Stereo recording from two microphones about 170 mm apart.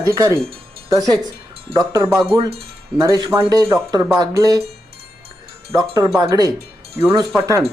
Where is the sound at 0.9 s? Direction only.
25° right (ahead or behind).